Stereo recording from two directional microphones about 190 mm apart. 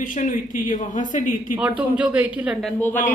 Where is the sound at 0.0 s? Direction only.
45° left (ahead or behind).